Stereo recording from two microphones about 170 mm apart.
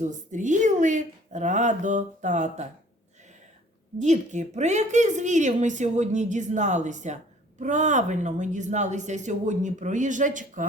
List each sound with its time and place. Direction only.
0.0 s a woman's voice: 45° right (ahead or behind)
3.9 s a woman's voice: 45° right (ahead or behind)